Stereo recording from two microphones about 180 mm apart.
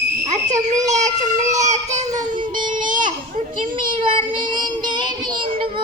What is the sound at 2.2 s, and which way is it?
Music, 45° right (ahead or behind).